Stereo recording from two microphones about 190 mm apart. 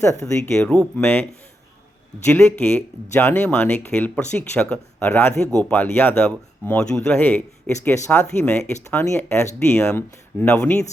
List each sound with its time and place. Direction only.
0.2 s speech: 5° left (ahead or behind)